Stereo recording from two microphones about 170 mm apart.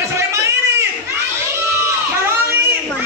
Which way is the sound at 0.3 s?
15° right (ahead or behind).